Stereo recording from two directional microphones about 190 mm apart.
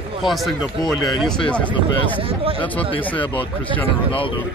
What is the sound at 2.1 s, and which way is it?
Speech, 30° right (ahead or behind).